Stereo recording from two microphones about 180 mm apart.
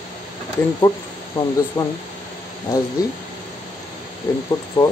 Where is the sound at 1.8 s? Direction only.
15° left (ahead or behind).